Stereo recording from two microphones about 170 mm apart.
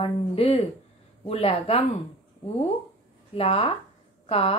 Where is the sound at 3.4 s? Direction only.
35° left (ahead or behind).